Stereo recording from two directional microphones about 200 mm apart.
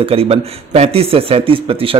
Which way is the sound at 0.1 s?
30° right (ahead or behind).